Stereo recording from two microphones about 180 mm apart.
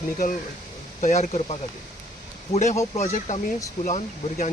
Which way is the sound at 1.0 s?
40° left (ahead or behind).